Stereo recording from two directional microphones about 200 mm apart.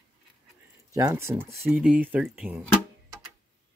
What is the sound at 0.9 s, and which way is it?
Speech, 15° right (ahead or behind).